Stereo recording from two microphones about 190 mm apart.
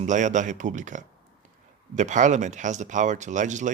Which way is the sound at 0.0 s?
40° right (ahead or behind).